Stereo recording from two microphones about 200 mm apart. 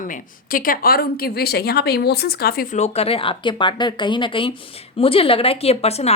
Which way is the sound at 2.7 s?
30° left (ahead or behind).